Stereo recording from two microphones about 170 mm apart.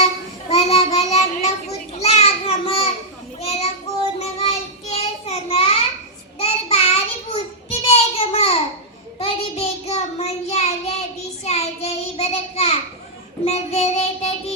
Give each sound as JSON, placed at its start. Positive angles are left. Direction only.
{"t": 0.4, "sound": "child singing", "side_deg": 35}
{"t": 2.0, "sound": "a sound", "side_deg": 35}
{"t": 3.4, "sound": "child singing", "side_deg": 40}